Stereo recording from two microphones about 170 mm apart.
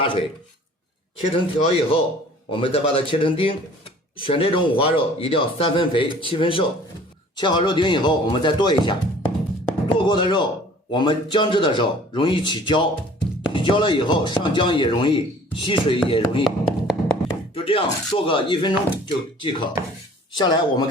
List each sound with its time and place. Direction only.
0.0 s speech: 30° left (ahead or behind)
10.1 s speech: 25° left (ahead or behind)
16.4 s music: 5° left (ahead or behind)
17.5 s speech: 30° left (ahead or behind)